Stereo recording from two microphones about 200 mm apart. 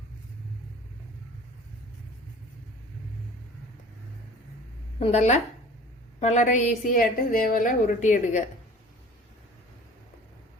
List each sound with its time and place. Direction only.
4.9 s a woman's voice: 35° left (ahead or behind)